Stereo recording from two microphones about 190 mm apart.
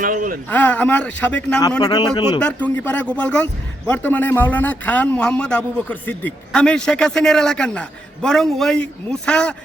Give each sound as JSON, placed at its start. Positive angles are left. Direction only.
{"t": 0.0, "sound": "speech", "side_deg": -45}
{"t": 0.5, "sound": "speech", "side_deg": 10}
{"t": 1.8, "sound": "a man's voice", "side_deg": 20}
{"t": 2.4, "sound": "a man's voice", "side_deg": 5}